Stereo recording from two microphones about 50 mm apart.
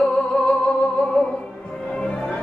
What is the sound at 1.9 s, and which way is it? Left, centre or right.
Music, centre.